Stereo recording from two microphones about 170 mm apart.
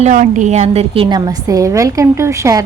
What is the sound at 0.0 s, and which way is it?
Speech, 50° right (ahead or behind).